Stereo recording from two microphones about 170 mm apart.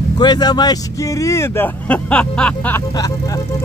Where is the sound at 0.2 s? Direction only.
25° left (ahead or behind); by 2.8 s 10° left (ahead or behind).